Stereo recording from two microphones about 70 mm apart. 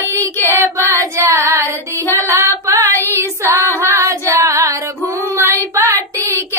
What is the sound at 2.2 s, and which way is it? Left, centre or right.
Female singing, right.